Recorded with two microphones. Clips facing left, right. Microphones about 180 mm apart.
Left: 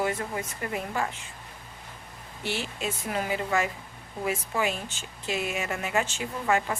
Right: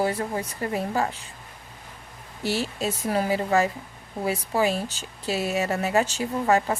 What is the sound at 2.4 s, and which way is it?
A woman's voice, 35° right (ahead or behind).